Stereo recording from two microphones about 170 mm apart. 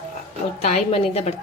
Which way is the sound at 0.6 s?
40° left (ahead or behind).